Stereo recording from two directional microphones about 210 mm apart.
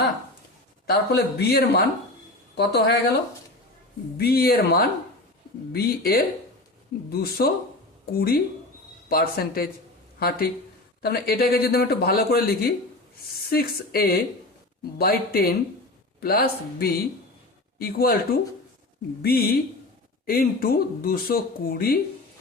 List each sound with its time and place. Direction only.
0.9 s speech: 50° left (ahead or behind)
4.2 s speech: 45° left (ahead or behind)